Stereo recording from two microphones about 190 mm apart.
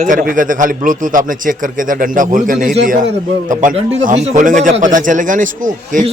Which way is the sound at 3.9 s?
35° right (ahead or behind).